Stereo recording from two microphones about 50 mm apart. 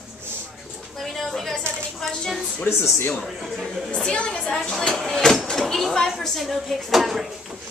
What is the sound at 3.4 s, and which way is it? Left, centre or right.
Speech, centre.